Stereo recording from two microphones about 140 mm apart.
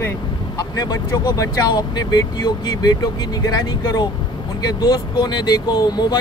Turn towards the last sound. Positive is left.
turn(degrees=30)  # may be behind; listen again after turning